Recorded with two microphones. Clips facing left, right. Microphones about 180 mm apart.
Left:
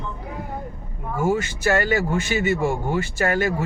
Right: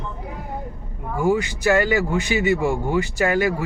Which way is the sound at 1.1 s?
15° right (ahead or behind).